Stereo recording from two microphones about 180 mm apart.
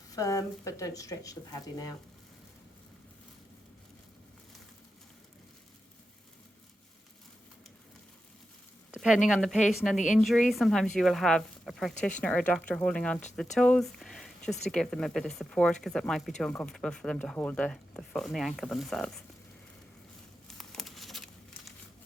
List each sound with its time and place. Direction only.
0.1 s speech: 20° left (ahead or behind)
8.9 s speech: centre (ahead or behind)
20.5 s crumpling: centre (ahead or behind)